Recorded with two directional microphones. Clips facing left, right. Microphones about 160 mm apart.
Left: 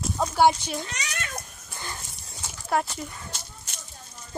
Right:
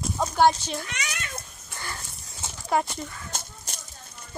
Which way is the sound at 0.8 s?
35° left (ahead or behind).